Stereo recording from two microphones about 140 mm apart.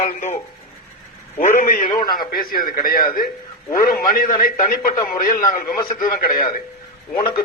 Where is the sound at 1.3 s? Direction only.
65° left (ahead or behind).